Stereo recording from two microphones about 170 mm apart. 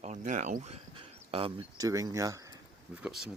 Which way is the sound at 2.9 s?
5° right (ahead or behind).